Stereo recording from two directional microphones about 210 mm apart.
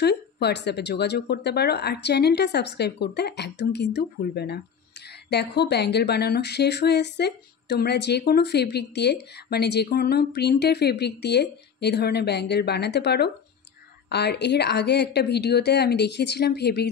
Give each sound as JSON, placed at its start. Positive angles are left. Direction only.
{"t": 0.0, "sound": "speech", "side_deg": 50}